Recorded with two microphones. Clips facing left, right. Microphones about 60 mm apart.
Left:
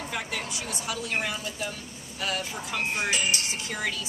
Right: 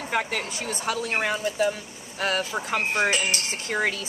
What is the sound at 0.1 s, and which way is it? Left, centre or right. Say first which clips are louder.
Speech: right 9 dB; right.